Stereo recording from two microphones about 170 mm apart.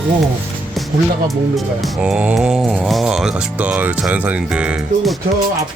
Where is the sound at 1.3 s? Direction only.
Centre (ahead or behind).